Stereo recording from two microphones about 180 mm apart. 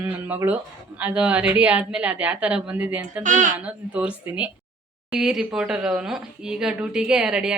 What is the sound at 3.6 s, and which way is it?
Speech, 5° right (ahead or behind).